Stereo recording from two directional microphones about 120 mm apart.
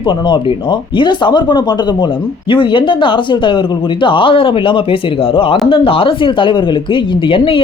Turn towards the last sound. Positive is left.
turn(degrees=50)  # may be behind; listen again after turning